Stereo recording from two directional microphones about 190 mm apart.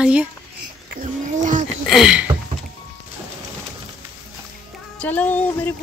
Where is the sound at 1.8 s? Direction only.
Centre (ahead or behind).